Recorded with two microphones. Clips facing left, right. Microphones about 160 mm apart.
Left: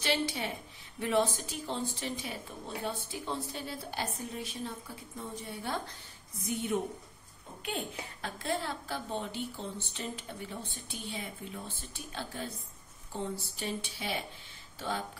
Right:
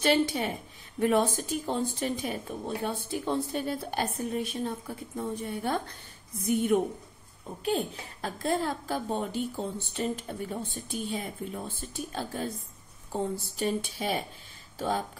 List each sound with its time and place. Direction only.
0.0 s a woman's voice: 50° right (ahead or behind)
7.6 s a woman's voice: 35° right (ahead or behind)